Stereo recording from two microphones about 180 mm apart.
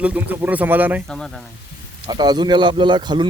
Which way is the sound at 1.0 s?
Centre (ahead or behind).